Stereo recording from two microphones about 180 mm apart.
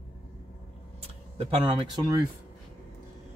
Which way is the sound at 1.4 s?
30° right (ahead or behind).